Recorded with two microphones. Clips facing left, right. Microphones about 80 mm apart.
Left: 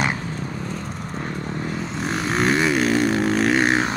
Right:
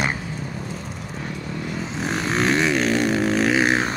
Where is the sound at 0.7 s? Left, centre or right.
Left.